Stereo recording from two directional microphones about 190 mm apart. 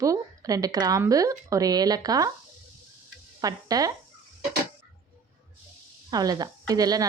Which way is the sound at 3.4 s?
20° right (ahead or behind).